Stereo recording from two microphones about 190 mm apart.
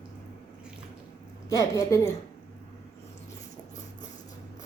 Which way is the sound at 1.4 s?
15° left (ahead or behind).